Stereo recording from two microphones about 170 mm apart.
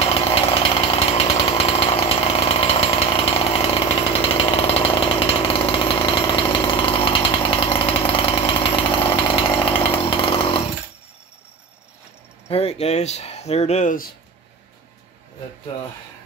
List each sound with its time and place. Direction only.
0.1 s chainsaw: 35° left (ahead or behind)
12.4 s speech: 35° left (ahead or behind)